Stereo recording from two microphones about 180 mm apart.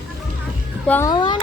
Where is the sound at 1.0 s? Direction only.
25° left (ahead or behind).